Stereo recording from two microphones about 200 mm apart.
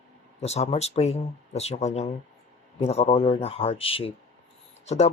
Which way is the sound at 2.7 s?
30° left (ahead or behind).